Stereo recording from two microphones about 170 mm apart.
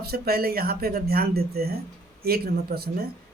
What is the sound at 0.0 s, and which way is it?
Speech, 65° right (ahead or behind).